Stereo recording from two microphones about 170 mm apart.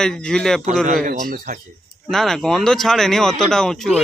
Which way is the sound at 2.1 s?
Centre (ahead or behind).